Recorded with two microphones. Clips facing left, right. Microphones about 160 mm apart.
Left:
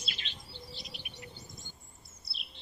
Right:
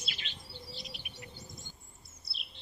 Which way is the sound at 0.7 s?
Centre (ahead or behind).